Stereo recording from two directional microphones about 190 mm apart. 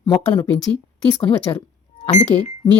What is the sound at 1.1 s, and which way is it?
Speech, 30° left (ahead or behind).